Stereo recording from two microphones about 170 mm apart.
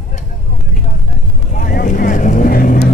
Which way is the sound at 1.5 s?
55° left (ahead or behind).